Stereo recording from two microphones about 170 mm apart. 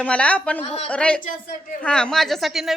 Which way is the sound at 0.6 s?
35° left (ahead or behind).